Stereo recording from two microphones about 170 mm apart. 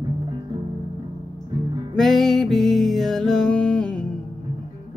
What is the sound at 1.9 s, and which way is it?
Music, centre (ahead or behind).